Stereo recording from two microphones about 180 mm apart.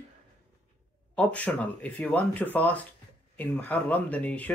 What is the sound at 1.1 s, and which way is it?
Speech, 10° left (ahead or behind).